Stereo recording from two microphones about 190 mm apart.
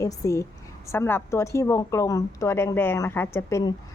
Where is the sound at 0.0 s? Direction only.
15° left (ahead or behind).